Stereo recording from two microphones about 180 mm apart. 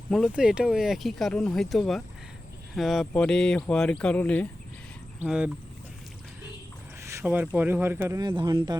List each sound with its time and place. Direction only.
0.1 s speech: centre (ahead or behind)
5.2 s speech: 10° right (ahead or behind)
7.1 s a sound: 10° right (ahead or behind)
7.5 s speech: 10° right (ahead or behind)